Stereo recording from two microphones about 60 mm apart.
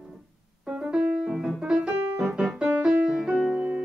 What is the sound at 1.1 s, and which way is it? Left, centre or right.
Piano, centre.